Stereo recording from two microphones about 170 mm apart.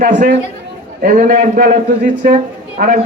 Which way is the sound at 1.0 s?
60° right (ahead or behind).